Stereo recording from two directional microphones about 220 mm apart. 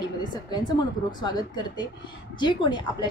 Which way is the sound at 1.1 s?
20° left (ahead or behind).